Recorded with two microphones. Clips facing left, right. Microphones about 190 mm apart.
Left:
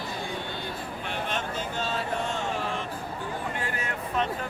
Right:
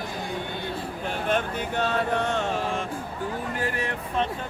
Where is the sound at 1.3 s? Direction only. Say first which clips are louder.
Right 5 dB; 60° right (ahead or behind).